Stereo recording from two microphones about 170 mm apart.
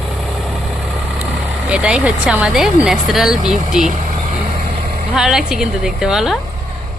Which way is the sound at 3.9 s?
50° right (ahead or behind).